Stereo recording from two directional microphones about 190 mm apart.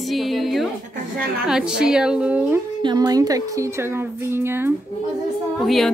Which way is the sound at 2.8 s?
20° right (ahead or behind).